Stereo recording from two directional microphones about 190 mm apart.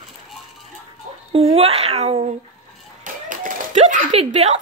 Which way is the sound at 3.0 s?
45° right (ahead or behind).